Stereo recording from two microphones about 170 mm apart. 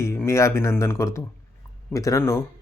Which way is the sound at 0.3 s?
15° left (ahead or behind).